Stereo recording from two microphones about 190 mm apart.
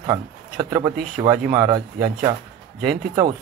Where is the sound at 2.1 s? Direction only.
45° right (ahead or behind).